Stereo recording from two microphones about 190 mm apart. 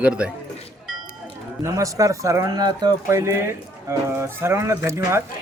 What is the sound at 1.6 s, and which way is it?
Speech, 15° right (ahead or behind).